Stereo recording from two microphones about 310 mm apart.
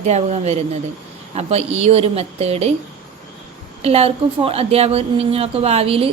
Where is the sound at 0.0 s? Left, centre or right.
Right.